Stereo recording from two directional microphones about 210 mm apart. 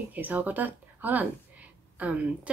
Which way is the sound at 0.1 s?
10° right (ahead or behind).